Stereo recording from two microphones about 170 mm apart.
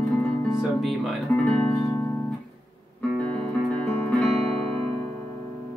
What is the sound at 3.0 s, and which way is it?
Music, 5° left (ahead or behind).